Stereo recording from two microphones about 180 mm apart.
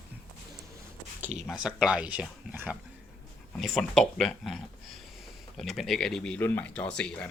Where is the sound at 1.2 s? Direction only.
5° right (ahead or behind).